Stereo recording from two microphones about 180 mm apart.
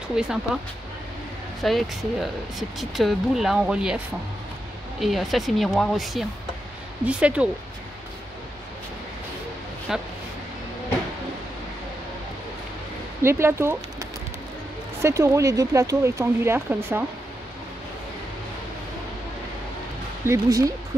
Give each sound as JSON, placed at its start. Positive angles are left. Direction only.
{"t": 0.1, "sound": "speech", "side_deg": -5}
{"t": 1.6, "sound": "speech", "side_deg": 0}
{"t": 5.0, "sound": "speech", "side_deg": 0}
{"t": 9.9, "sound": "speech", "side_deg": 0}
{"t": 13.2, "sound": "speech", "side_deg": -15}
{"t": 20.2, "sound": "speech", "side_deg": -20}